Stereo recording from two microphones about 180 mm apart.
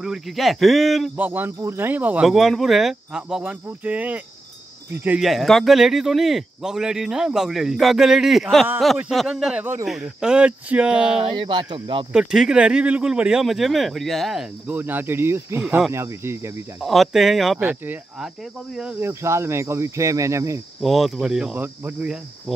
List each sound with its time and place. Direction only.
0.0 s speech: centre (ahead or behind)
11.1 s speech: 30° right (ahead or behind)
12.1 s speech: 5° right (ahead or behind)
16.8 s speech: centre (ahead or behind); by 20.6 s 15° right (ahead or behind)
20.8 s speech: centre (ahead or behind)